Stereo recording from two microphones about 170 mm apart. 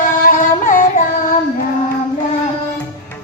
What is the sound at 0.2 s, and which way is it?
Music, 55° left (ahead or behind).